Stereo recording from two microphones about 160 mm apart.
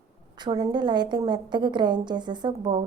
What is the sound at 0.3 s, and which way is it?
A woman's voice, 25° right (ahead or behind).